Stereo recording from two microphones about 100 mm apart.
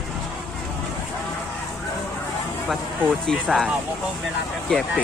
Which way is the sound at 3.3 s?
5° left (ahead or behind).